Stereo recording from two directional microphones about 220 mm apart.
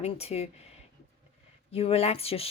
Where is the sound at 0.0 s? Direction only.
30° left (ahead or behind).